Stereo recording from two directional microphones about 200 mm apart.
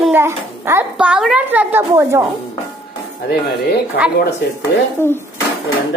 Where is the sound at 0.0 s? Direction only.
10° right (ahead or behind).